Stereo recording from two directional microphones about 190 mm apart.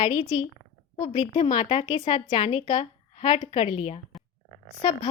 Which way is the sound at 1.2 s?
25° left (ahead or behind).